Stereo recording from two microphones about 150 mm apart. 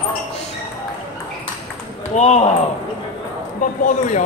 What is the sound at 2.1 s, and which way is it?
Speech, 50° left (ahead or behind).